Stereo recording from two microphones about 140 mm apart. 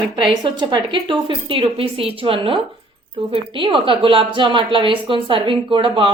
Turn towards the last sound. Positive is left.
turn(degrees=-35)  # may be behind; listen again after turning